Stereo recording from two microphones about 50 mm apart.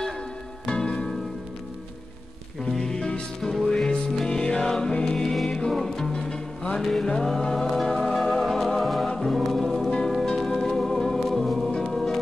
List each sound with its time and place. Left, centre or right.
0.7 s music: centre
2.7 s music: centre
6.8 s music: centre
9.8 s music: centre